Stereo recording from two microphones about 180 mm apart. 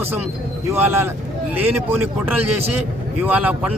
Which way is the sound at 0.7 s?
15° right (ahead or behind).